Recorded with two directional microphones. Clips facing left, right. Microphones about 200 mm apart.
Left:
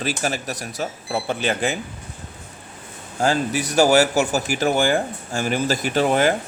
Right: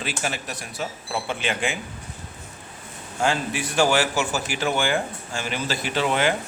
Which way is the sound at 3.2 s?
40° left (ahead or behind).